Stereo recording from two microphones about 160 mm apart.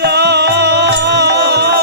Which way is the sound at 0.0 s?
90° right.